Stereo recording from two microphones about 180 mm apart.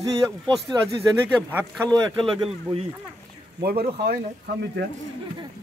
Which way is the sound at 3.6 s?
60° right (ahead or behind).